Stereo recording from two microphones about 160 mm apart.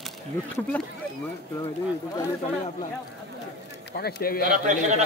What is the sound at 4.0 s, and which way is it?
Speech, 75° left (ahead or behind).